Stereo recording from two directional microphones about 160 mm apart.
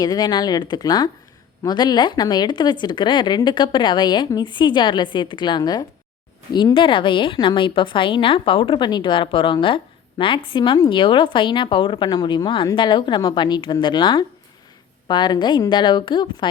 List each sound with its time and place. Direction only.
0.0 s a woman's voice: 25° left (ahead or behind)